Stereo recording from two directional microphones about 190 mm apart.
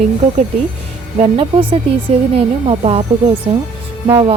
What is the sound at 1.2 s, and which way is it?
A woman's voice, 30° right (ahead or behind).